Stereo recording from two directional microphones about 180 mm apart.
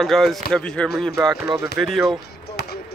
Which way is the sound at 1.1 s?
20° right (ahead or behind).